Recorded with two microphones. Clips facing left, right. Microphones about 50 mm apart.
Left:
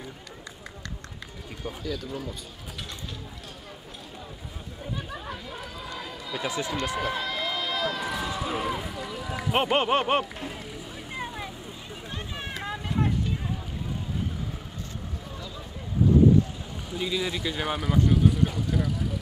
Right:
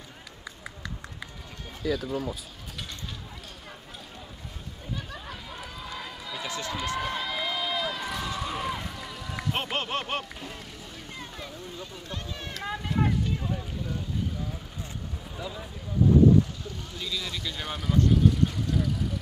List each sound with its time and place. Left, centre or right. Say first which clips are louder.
1.7 s speech: right 4 dB; centre
4.9 s run: left 2 dB; centre
6.4 s speech: left 4 dB; centre
7.0 s speech: left 2 dB; centre
9.5 s speech: left 8 dB; centre
11.1 s vehicle: left 7 dB; centre
12.1 s a sound: left 3 dB; centre
12.6 s vehicle: right 1 dB; centre
15.3 s a sound: right 2 dB; centre
16.9 s speech: left 7 dB; left; by 19.1 s centre